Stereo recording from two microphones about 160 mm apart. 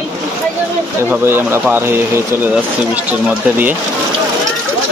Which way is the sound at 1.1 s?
15° right (ahead or behind).